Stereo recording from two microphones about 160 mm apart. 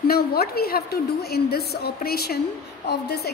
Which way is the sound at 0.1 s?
75° left (ahead or behind).